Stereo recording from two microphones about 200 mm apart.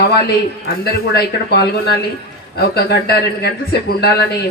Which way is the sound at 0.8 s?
50° left (ahead or behind).